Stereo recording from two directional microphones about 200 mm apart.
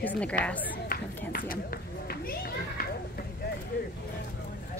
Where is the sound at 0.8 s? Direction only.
45° left (ahead or behind).